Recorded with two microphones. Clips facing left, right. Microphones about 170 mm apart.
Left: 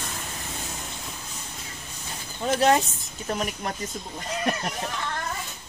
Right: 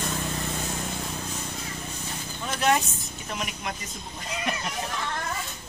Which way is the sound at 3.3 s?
40° left (ahead or behind).